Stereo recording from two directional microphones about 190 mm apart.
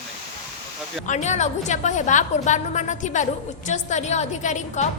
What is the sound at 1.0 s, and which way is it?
A woman's voice, 40° left (ahead or behind).